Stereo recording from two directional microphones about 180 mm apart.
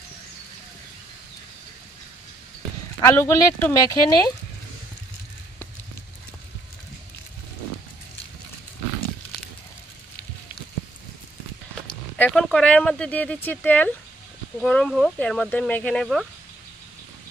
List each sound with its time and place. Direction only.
3.0 s speech: 15° left (ahead or behind)
12.2 s speech: 5° left (ahead or behind)